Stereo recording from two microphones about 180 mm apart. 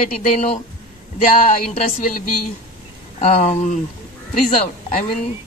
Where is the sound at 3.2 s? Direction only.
45° left (ahead or behind).